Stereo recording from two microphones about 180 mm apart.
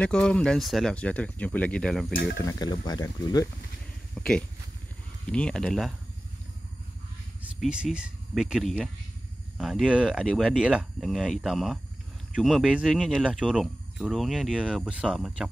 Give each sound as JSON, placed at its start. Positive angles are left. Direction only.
{"t": 0.0, "sound": "speech", "side_deg": 5}
{"t": 2.3, "sound": "speech", "side_deg": 20}
{"t": 4.1, "sound": "speech", "side_deg": 5}
{"t": 7.6, "sound": "speech", "side_deg": -5}